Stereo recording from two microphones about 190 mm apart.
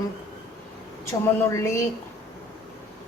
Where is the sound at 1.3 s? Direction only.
15° left (ahead or behind).